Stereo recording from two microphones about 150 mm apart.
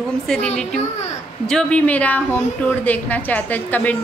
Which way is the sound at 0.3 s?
5° left (ahead or behind).